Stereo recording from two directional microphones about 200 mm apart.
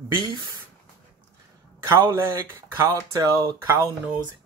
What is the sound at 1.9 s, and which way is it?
Speech, 15° right (ahead or behind).